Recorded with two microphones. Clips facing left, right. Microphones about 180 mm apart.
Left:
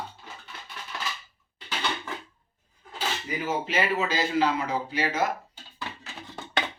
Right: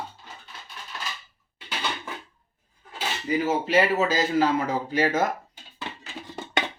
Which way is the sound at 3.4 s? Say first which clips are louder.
Right 4 dB; 40° right (ahead or behind).